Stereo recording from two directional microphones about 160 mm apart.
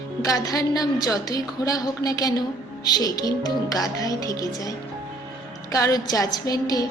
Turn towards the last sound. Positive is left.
turn(degrees=25)  # may be behind; listen again after turning